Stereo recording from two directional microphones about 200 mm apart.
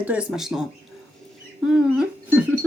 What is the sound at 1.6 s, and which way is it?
Speech, 5° right (ahead or behind).